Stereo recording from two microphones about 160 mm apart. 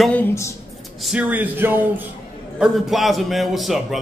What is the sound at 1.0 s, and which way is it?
Speech, 10° right (ahead or behind).